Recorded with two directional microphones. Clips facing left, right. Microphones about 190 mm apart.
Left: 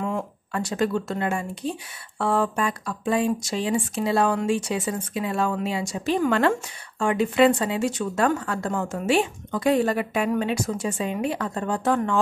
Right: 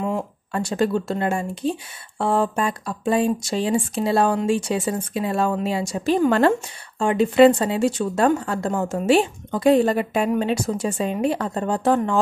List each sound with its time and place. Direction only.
0.5 s speech: 30° right (ahead or behind)
7.0 s a woman's voice: 25° right (ahead or behind)